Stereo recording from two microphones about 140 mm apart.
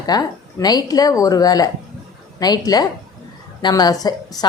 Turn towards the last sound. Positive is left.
turn(degrees=25)  # may be behind; listen again after turning